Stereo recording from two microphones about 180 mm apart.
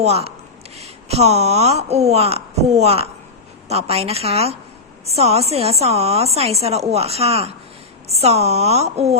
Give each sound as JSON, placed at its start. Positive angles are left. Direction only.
{"t": 0.0, "sound": "a woman's voice", "side_deg": -35}